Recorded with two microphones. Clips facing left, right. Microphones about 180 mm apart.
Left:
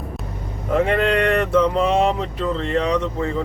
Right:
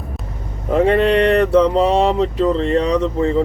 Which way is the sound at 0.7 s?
30° right (ahead or behind).